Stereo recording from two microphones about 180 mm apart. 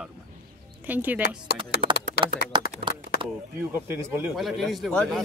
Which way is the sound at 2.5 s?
25° right (ahead or behind).